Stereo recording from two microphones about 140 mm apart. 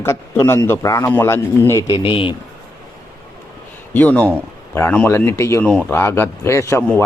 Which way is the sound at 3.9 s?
10° left (ahead or behind).